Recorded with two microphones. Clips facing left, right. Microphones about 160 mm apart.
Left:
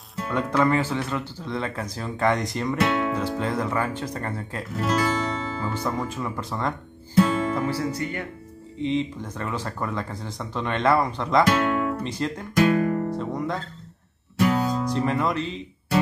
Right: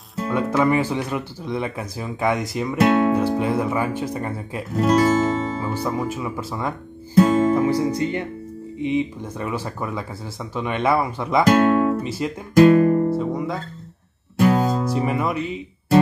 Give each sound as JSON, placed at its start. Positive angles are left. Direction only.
{"t": 0.3, "sound": "speech", "side_deg": -10}
{"t": 2.8, "sound": "speech", "side_deg": -35}
{"t": 3.2, "sound": "speech", "side_deg": -10}
{"t": 4.7, "sound": "guitar", "side_deg": -35}
{"t": 5.7, "sound": "speech", "side_deg": -10}
{"t": 7.2, "sound": "music", "side_deg": -40}
{"t": 7.5, "sound": "speech", "side_deg": -15}
{"t": 11.4, "sound": "speech", "side_deg": -40}
{"t": 12.0, "sound": "speech", "side_deg": -10}
{"t": 12.5, "sound": "music", "side_deg": -35}
{"t": 13.1, "sound": "guitar", "side_deg": -5}
{"t": 14.4, "sound": "music", "side_deg": -30}
{"t": 14.9, "sound": "speech", "side_deg": -10}